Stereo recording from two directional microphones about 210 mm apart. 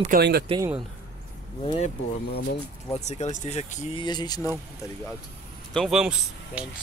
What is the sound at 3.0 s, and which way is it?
Speech, 30° left (ahead or behind).